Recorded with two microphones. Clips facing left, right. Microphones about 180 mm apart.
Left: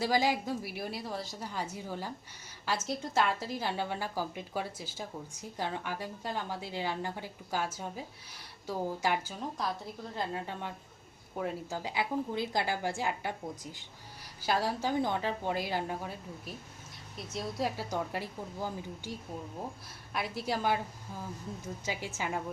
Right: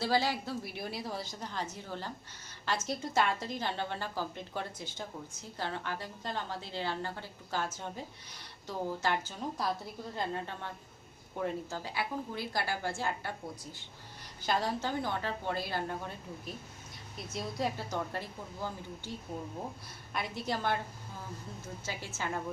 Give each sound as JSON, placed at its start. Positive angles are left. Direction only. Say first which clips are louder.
{"t": 0.0, "sound": "a woman's voice", "louder": "left 2 dB", "side_deg": 15}
{"t": 11.7, "sound": "a woman's voice", "louder": "left 3 dB", "side_deg": 15}
{"t": 14.4, "sound": "a woman's voice", "louder": "left 1 dB", "side_deg": 5}
{"t": 17.2, "sound": "a woman's voice", "louder": "left 1 dB", "side_deg": 0}
{"t": 20.1, "sound": "a woman's voice", "louder": "left 2 dB", "side_deg": 5}
{"t": 21.8, "sound": "a woman's voice", "louder": "left 2 dB", "side_deg": 15}